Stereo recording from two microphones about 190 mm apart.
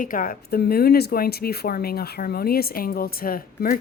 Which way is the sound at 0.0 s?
45° left (ahead or behind).